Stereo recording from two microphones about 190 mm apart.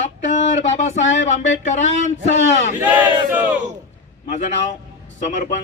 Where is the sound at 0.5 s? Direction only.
40° left (ahead or behind).